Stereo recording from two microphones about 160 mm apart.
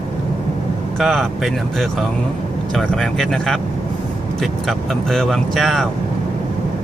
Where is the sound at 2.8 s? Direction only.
Centre (ahead or behind).